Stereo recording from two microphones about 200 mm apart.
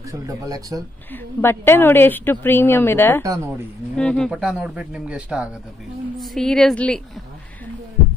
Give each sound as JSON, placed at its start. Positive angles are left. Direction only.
{"t": 0.1, "sound": "speech", "side_deg": -15}
{"t": 1.1, "sound": "a woman's voice", "side_deg": 10}